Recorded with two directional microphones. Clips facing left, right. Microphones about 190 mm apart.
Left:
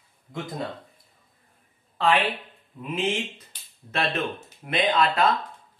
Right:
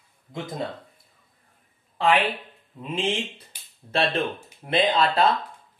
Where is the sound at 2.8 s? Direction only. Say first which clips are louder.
Even; 30° right (ahead or behind).